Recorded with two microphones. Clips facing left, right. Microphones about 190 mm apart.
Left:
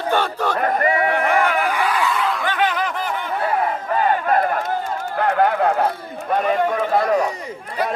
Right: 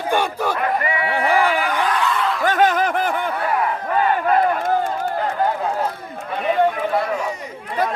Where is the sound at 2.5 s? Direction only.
45° right (ahead or behind).